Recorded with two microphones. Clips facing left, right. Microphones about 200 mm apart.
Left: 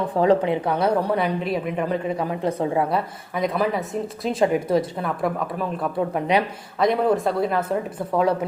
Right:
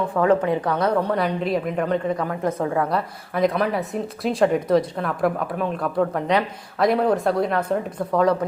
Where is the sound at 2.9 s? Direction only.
Centre (ahead or behind).